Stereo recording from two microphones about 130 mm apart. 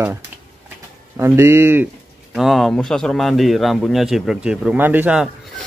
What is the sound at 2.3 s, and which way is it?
A man's voice, centre (ahead or behind).